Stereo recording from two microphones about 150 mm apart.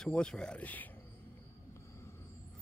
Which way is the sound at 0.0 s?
5° left (ahead or behind).